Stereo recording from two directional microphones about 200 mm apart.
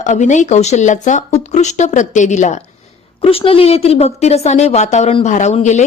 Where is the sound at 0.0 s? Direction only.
40° left (ahead or behind).